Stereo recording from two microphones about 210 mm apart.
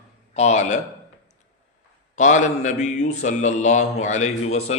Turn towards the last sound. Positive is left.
turn(degrees=30)  # may be behind; listen again after turning